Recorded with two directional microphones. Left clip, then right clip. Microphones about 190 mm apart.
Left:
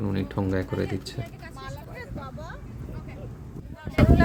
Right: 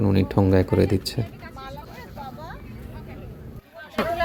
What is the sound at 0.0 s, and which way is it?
Speech, 30° right (ahead or behind).